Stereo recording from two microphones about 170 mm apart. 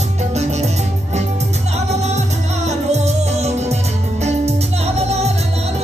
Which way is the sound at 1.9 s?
40° right (ahead or behind).